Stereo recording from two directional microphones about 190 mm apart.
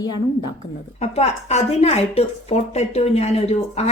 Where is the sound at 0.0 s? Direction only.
20° left (ahead or behind).